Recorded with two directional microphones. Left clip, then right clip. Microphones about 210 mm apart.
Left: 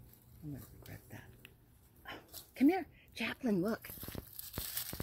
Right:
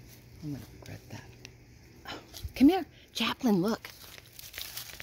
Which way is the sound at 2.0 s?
20° right (ahead or behind).